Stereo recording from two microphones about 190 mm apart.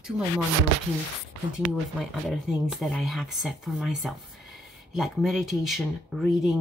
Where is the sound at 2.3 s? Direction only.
Centre (ahead or behind).